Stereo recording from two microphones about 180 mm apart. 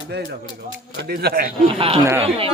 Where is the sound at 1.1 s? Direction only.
60° right (ahead or behind).